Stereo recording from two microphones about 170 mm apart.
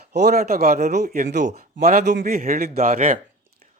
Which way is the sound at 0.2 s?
65° right (ahead or behind).